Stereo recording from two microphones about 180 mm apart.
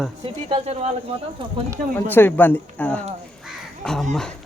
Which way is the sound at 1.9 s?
10° left (ahead or behind).